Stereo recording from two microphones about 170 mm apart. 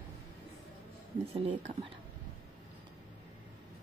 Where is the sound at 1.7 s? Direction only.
30° right (ahead or behind).